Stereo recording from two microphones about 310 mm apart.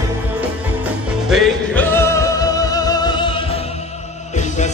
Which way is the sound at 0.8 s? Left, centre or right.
Centre.